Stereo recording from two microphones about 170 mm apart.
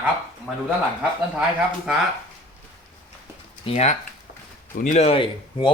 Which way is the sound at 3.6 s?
40° left (ahead or behind).